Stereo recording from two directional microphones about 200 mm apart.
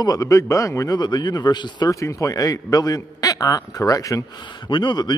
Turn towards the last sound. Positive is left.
turn(degrees=20)  # may be behind; listen again after turning